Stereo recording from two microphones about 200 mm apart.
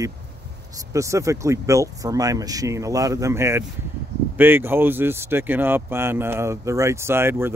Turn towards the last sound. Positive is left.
turn(degrees=-10)  # may be behind; listen again after turning